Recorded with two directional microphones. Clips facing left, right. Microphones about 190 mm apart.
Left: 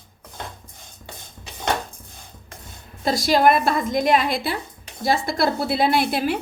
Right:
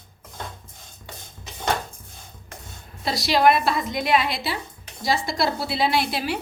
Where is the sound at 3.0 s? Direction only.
45° left (ahead or behind).